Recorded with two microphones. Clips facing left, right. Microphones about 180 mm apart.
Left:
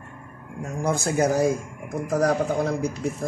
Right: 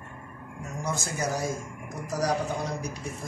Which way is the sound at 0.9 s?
55° left (ahead or behind).